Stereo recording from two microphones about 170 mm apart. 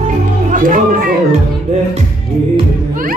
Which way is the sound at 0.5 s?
50° right (ahead or behind).